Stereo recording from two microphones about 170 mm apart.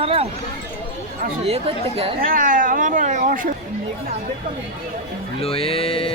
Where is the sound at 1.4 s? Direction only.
35° right (ahead or behind).